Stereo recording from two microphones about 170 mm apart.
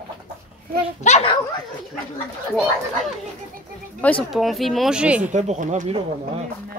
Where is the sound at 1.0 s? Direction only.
40° left (ahead or behind).